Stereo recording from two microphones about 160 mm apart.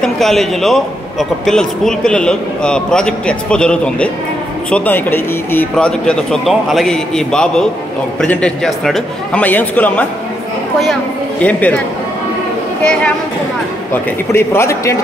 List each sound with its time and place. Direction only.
0.0 s a man's voice: centre (ahead or behind)
11.4 s a man's voice: 10° left (ahead or behind)
14.3 s a man's voice: 15° left (ahead or behind)